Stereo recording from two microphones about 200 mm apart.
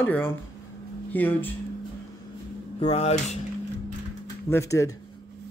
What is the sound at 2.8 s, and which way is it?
Speech, 30° left (ahead or behind).